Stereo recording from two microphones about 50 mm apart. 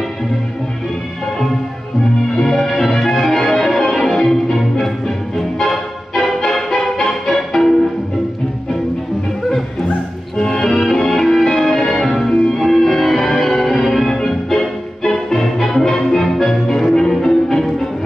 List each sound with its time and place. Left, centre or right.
2.3 s music: centre
10.3 s music: centre